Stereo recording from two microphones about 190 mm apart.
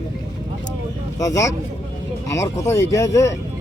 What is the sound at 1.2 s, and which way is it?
Speech, 15° left (ahead or behind).